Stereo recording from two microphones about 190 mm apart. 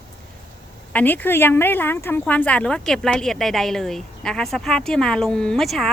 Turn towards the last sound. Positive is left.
turn(degrees=0)  # may be behind; listen again after turning